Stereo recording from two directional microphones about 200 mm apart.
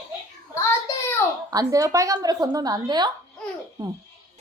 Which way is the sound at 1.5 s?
15° right (ahead or behind).